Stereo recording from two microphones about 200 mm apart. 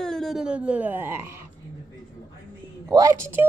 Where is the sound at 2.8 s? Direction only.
15° right (ahead or behind).